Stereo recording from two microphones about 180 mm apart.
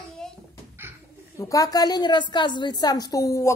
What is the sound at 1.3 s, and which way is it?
A woman's voice, 20° left (ahead or behind).